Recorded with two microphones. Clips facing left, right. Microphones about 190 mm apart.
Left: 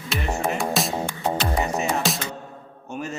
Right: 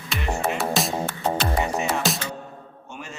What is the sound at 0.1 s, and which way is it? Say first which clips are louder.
Music: left 1 dB; centre (ahead or behind).